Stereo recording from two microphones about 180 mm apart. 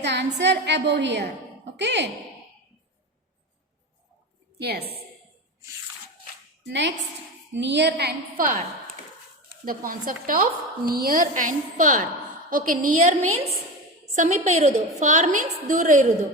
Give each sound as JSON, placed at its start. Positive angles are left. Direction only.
{"t": 0.0, "sound": "a woman's voice", "side_deg": -70}
{"t": 4.5, "sound": "a woman's voice", "side_deg": -60}
{"t": 6.7, "sound": "a woman's voice", "side_deg": -75}
{"t": 9.6, "sound": "a woman's voice", "side_deg": -50}